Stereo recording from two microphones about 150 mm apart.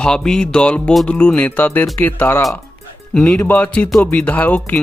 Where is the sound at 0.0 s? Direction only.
5° left (ahead or behind).